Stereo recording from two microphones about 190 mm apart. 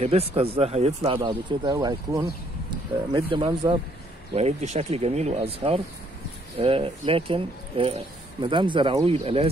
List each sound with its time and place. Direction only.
0.0 s speech: 30° right (ahead or behind)